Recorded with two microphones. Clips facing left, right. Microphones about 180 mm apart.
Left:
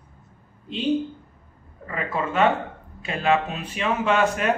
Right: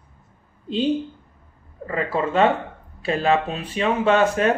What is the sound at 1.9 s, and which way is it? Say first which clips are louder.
A man's voice: right 4 dB; 30° right (ahead or behind).